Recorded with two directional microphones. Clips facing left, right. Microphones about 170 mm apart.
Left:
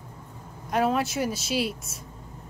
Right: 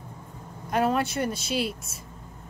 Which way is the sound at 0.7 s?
Centre (ahead or behind).